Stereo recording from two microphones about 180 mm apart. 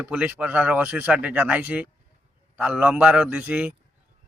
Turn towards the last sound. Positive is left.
turn(degrees=-10)  # may be behind; listen again after turning